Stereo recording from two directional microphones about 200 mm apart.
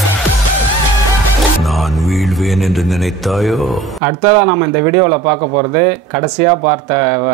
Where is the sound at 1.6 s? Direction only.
Centre (ahead or behind).